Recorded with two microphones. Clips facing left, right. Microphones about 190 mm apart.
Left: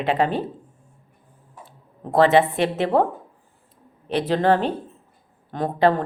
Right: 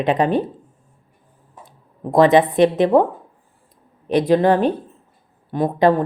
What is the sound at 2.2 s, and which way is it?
Speech, 15° right (ahead or behind).